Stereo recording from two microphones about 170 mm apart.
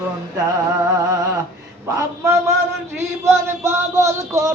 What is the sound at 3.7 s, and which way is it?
Music, 15° right (ahead or behind).